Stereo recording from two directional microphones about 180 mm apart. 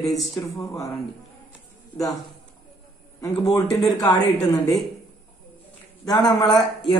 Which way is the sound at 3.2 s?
20° left (ahead or behind).